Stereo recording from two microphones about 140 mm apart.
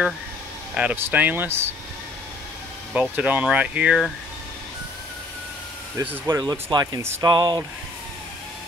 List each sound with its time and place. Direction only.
0.7 s speech: 10° right (ahead or behind)
2.9 s speech: 10° right (ahead or behind)
5.9 s speech: 20° right (ahead or behind)